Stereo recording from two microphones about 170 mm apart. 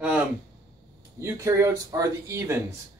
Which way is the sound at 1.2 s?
15° right (ahead or behind).